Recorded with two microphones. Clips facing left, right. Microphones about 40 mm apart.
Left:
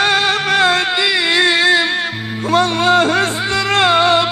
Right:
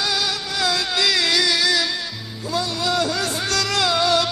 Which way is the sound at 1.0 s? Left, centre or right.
Left.